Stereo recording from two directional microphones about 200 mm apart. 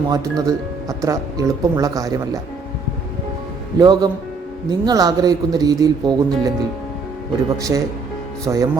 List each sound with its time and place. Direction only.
0.1 s speech: 20° right (ahead or behind)
3.8 s speech: 20° right (ahead or behind)
7.7 s speech: 15° right (ahead or behind)